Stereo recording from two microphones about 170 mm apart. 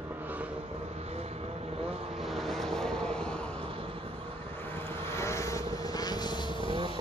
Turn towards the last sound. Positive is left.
turn(degrees=25)  # may be behind; listen again after turning